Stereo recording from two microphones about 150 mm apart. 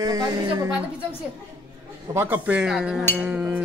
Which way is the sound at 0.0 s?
25° right (ahead or behind).